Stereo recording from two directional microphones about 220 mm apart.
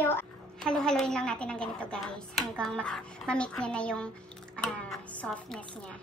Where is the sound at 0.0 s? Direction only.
10° left (ahead or behind).